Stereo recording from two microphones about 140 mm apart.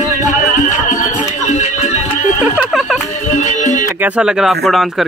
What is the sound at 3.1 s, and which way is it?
Music, 60° left (ahead or behind).